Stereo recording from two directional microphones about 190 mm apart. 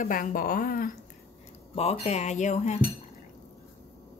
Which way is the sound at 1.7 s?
30° left (ahead or behind).